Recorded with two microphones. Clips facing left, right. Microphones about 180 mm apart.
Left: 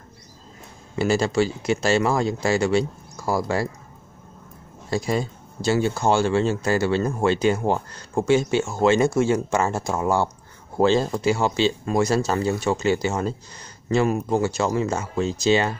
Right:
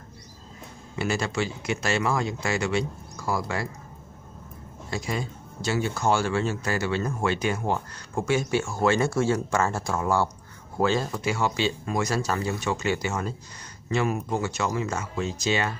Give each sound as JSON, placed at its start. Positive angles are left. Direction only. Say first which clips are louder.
{"t": 0.9, "sound": "speech", "louder": "left 7 dB", "side_deg": 30}
{"t": 4.9, "sound": "speech", "louder": "left 7 dB", "side_deg": 35}